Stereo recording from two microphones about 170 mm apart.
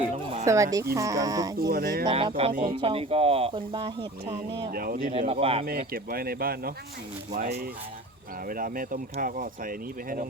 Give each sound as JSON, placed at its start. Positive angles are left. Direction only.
{"t": 0.4, "sound": "speech", "side_deg": -20}
{"t": 1.5, "sound": "speech", "side_deg": -65}
{"t": 2.0, "sound": "speech", "side_deg": -30}
{"t": 2.5, "sound": "speech", "side_deg": -55}
{"t": 2.8, "sound": "speech", "side_deg": -35}
{"t": 4.7, "sound": "speech", "side_deg": -60}
{"t": 5.3, "sound": "speech", "side_deg": -35}
{"t": 5.6, "sound": "speech", "side_deg": -60}